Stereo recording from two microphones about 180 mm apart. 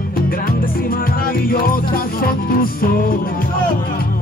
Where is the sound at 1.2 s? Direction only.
55° left (ahead or behind).